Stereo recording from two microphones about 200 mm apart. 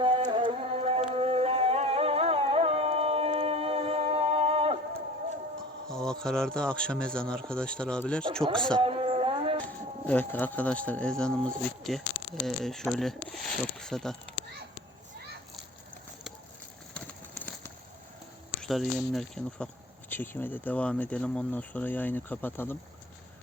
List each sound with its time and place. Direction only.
0.0 s music: 25° right (ahead or behind)
5.9 s speech: 5° left (ahead or behind)
8.8 s a sound: 30° right (ahead or behind)
9.6 s speech: 10° left (ahead or behind)
16.9 s clip-clop: 5° left (ahead or behind)
18.6 s speech: centre (ahead or behind)